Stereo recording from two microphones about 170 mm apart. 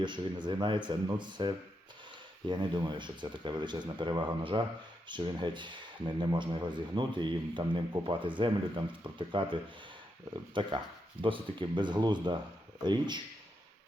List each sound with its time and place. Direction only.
0.0 s speech: 25° right (ahead or behind)